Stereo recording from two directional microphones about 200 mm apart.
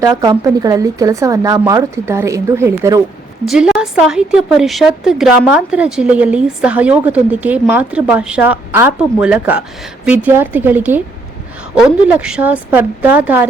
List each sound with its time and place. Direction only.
0.0 s speech: 20° right (ahead or behind)
3.4 s a woman's voice: centre (ahead or behind)